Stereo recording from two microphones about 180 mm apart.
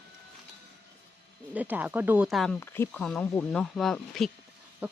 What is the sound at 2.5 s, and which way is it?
Speech, 15° left (ahead or behind).